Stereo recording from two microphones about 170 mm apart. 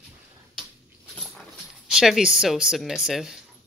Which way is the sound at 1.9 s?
5° right (ahead or behind).